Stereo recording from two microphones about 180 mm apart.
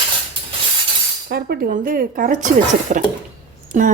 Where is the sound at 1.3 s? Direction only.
50° right (ahead or behind).